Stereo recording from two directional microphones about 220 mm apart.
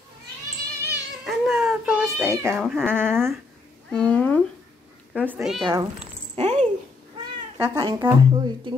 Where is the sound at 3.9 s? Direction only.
5° left (ahead or behind).